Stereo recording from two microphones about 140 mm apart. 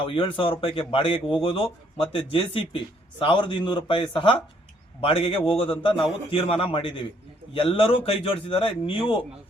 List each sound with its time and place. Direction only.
0.0 s speech: 35° left (ahead or behind)